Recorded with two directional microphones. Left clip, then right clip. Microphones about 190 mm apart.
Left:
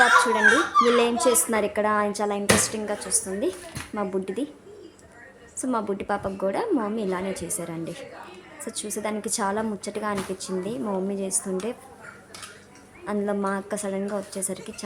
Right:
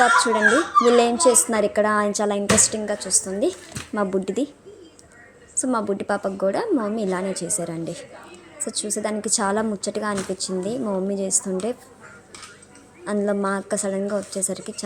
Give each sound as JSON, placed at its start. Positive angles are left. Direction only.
{"t": 0.0, "sound": "a woman's voice", "side_deg": -20}
{"t": 5.5, "sound": "a woman's voice", "side_deg": -15}
{"t": 13.1, "sound": "a woman's voice", "side_deg": -20}